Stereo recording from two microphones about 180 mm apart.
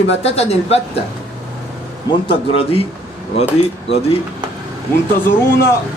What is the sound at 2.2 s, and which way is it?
Speech, 30° left (ahead or behind).